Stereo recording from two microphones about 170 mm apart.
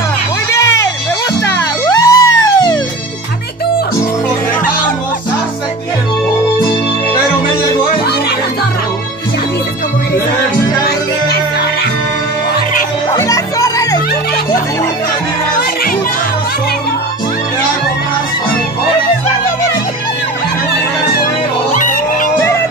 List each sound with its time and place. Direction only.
0.5 s music: 15° left (ahead or behind)
13.1 s music: 20° left (ahead or behind)
21.7 s music: 50° left (ahead or behind)